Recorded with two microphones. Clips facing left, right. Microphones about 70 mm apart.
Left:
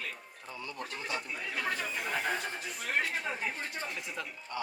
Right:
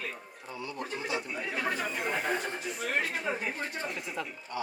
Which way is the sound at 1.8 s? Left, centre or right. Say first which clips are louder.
Right 3 dB; right.